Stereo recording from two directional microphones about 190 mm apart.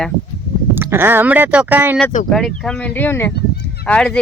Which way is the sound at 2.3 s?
5° left (ahead or behind).